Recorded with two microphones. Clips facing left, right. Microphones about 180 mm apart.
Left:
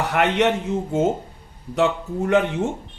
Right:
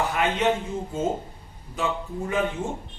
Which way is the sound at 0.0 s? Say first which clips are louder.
Left 4 dB; 70° left (ahead or behind).